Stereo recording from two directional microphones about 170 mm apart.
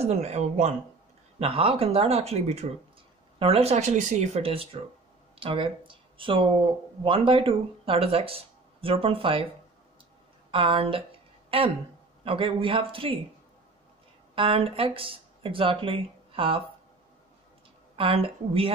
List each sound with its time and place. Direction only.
0.0 s speech: 35° right (ahead or behind)
10.5 s speech: 30° right (ahead or behind)
14.3 s speech: 35° right (ahead or behind)
17.9 s speech: 35° right (ahead or behind)